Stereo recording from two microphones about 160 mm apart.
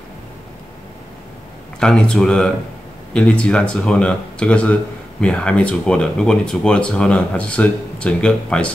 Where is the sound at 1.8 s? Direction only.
5° left (ahead or behind).